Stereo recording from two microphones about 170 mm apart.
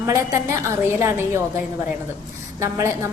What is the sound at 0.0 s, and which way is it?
A woman's voice, 15° right (ahead or behind).